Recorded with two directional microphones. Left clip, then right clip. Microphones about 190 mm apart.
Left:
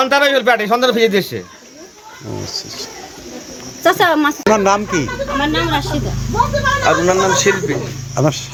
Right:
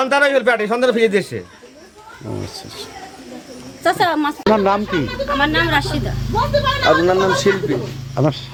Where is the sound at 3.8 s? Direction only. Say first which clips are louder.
Left 4 dB; 45° left (ahead or behind).